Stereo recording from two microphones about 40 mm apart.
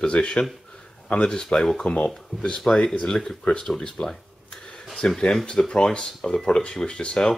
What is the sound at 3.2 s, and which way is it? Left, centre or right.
Speech, centre.